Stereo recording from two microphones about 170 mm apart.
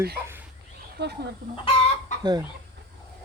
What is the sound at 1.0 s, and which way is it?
Speech, 80° right.